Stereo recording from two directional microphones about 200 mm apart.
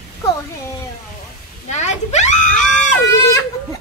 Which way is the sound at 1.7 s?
35° left (ahead or behind).